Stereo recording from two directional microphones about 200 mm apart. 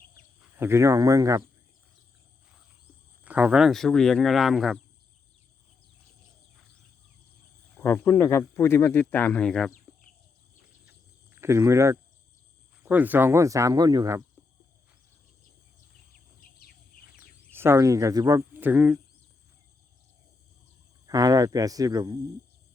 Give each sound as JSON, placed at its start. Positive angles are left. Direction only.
{"t": 0.5, "sound": "speech", "side_deg": -10}
{"t": 3.2, "sound": "speech", "side_deg": -5}
{"t": 7.8, "sound": "speech", "side_deg": 10}
{"t": 10.8, "sound": "cricket", "side_deg": -10}
{"t": 12.8, "sound": "speech", "side_deg": -10}
{"t": 17.5, "sound": "speech", "side_deg": -10}
{"t": 21.1, "sound": "speech", "side_deg": -20}